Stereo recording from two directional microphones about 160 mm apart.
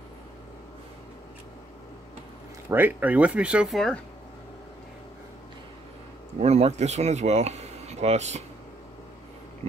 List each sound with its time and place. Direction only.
2.7 s speech: 10° right (ahead or behind)
6.4 s speech: 40° right (ahead or behind)